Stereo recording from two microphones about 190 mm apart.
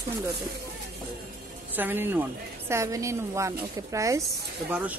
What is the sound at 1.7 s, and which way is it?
Speech, 10° right (ahead or behind).